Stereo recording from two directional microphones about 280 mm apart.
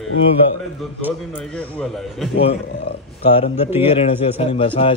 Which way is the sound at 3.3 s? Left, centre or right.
Centre.